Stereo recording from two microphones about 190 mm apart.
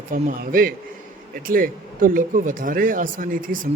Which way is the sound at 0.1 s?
50° right (ahead or behind).